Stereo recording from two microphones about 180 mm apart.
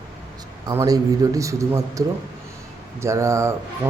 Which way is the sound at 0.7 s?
15° right (ahead or behind).